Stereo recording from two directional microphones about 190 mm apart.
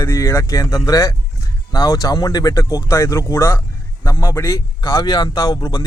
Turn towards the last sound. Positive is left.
turn(degrees=20)  # may be behind; listen again after turning